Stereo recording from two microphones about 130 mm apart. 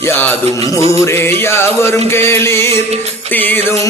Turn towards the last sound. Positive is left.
turn(degrees=15)  # may be behind; listen again after turning